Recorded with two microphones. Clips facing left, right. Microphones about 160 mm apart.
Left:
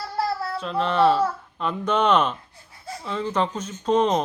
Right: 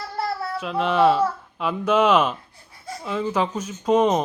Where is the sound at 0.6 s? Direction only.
5° right (ahead or behind).